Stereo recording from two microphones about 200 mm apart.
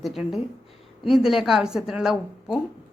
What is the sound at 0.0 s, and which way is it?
A woman's voice, centre (ahead or behind).